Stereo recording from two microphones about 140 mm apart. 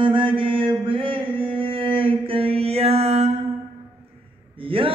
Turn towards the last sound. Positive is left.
turn(degrees=-40)  # may be behind; listen again after turning